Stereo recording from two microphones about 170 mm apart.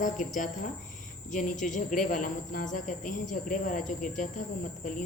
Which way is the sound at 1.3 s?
50° left (ahead or behind).